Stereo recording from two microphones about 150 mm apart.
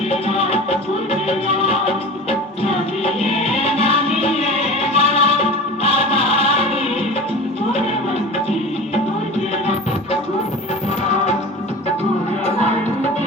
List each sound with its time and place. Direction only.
0.1 s music: 40° left (ahead or behind)